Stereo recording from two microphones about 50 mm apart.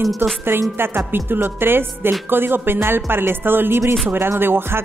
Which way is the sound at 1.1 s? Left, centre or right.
Right.